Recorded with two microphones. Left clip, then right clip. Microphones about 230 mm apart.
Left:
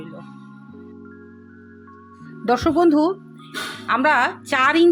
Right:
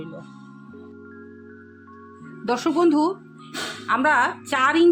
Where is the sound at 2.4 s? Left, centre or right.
Centre.